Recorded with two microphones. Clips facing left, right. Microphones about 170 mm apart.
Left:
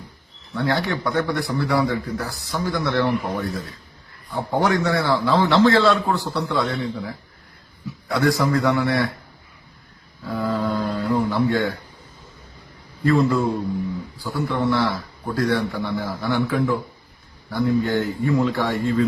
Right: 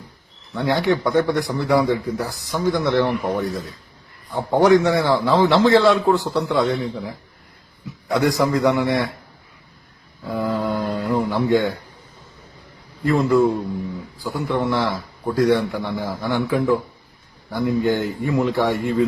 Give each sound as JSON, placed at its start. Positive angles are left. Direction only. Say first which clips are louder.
{"t": 0.5, "sound": "a man's voice", "louder": "right 3 dB", "side_deg": -15}
{"t": 4.4, "sound": "a man's voice", "louder": "right 6 dB", "side_deg": -15}
{"t": 10.3, "sound": "a sound", "louder": "right 1 dB", "side_deg": -20}
{"t": 13.1, "sound": "a man's voice", "louder": "right 2 dB", "side_deg": -15}